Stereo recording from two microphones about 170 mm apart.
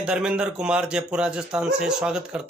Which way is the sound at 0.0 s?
5° right (ahead or behind).